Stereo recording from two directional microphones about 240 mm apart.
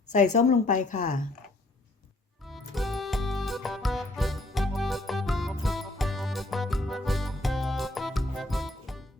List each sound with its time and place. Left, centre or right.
0.1 s a woman's voice: left
2.5 s music: centre